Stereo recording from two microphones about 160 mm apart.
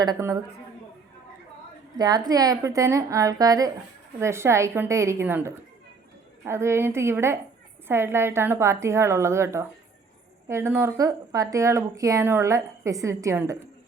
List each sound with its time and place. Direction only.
0.0 s speech: 20° right (ahead or behind)
2.0 s a woman's voice: 25° right (ahead or behind)